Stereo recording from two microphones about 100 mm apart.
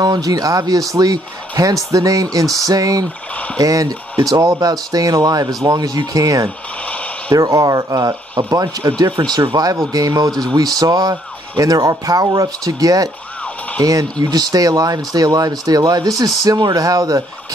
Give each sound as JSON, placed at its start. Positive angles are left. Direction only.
{"t": 0.0, "sound": "speech", "side_deg": -40}
{"t": 9.6, "sound": "speech", "side_deg": -40}